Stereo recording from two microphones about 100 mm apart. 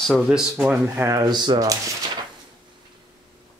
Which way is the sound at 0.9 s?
25° right (ahead or behind).